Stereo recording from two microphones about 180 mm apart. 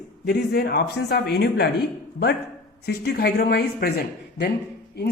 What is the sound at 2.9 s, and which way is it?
A woman's voice, 65° left (ahead or behind).